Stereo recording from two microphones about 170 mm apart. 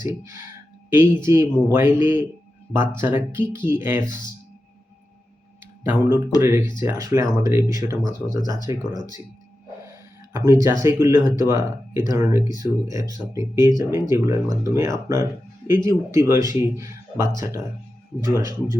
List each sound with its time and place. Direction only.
0.0 s speech: 15° right (ahead or behind)
5.8 s speech: 10° right (ahead or behind)
8.4 s speech: 25° left (ahead or behind)
8.6 s speech: 20° right (ahead or behind)
10.3 s speech: 15° right (ahead or behind)